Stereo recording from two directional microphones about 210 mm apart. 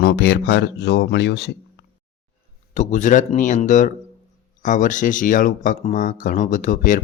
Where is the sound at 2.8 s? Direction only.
35° left (ahead or behind).